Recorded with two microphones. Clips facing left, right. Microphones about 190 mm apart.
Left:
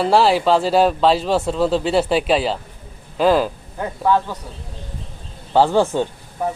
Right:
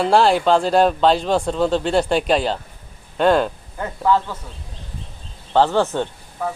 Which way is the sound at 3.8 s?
15° left (ahead or behind).